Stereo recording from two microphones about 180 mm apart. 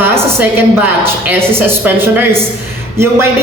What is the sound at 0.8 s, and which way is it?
A woman's voice, 10° right (ahead or behind).